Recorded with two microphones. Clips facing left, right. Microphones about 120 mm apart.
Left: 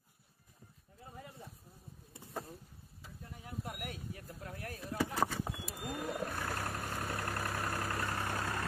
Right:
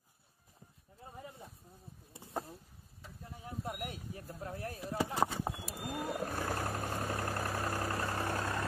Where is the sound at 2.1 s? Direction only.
30° right (ahead or behind).